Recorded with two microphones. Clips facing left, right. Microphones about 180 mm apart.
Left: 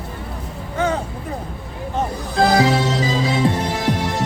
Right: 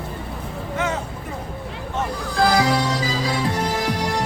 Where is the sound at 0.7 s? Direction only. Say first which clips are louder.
Left 4 dB; 30° left (ahead or behind).